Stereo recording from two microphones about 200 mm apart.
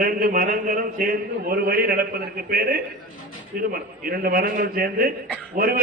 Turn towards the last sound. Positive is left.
turn(degrees=-50)  # may be behind; listen again after turning